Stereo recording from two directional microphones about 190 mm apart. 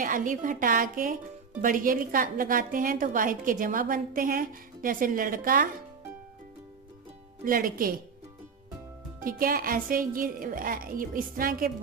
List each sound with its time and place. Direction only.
0.0 s a woman's voice: 45° right (ahead or behind)
7.4 s a woman's voice: 50° right (ahead or behind)
9.2 s a woman's voice: 50° right (ahead or behind)